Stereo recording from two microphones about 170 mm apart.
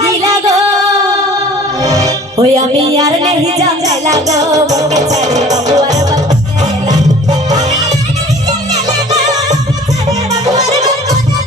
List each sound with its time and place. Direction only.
0.0 s music: 20° right (ahead or behind)
1.8 s music: 20° right (ahead or behind)
3.8 s music: 20° right (ahead or behind)
10.1 s music: 20° right (ahead or behind)